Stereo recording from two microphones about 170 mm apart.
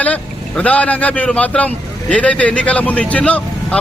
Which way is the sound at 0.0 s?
10° left (ahead or behind).